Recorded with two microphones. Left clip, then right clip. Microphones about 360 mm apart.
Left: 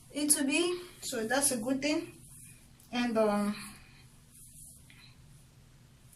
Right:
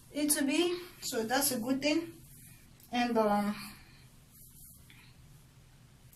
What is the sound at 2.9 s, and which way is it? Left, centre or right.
Speech, centre.